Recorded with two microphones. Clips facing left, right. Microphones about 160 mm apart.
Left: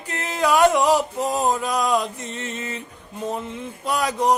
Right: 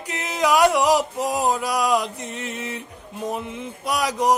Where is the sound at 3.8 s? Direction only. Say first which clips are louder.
Even; 10° right (ahead or behind).